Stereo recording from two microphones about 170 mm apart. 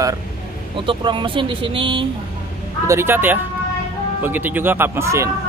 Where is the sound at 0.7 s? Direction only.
30° right (ahead or behind).